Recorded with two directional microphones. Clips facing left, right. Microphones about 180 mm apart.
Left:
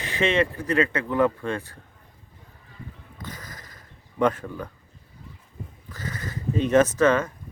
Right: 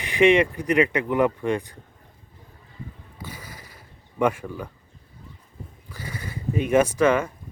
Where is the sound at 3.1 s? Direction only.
10° right (ahead or behind).